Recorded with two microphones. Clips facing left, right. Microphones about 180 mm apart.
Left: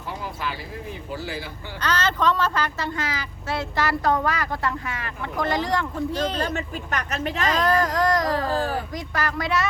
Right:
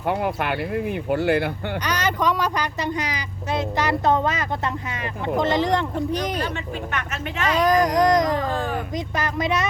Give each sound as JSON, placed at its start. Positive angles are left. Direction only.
{"t": 0.0, "sound": "speech", "side_deg": -65}
{"t": 1.8, "sound": "speech", "side_deg": -15}
{"t": 6.9, "sound": "a woman's voice", "side_deg": 35}
{"t": 7.4, "sound": "speech", "side_deg": -10}